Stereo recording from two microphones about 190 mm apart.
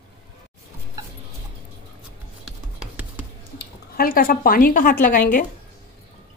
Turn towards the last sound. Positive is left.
turn(degrees=45)  # may be behind; listen again after turning